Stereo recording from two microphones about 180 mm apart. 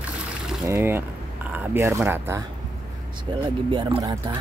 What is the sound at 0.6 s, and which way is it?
Speech, 15° right (ahead or behind).